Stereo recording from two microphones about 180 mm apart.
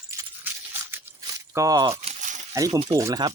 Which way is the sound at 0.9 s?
15° right (ahead or behind).